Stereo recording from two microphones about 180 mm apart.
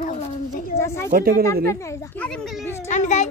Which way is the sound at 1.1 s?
55° right (ahead or behind).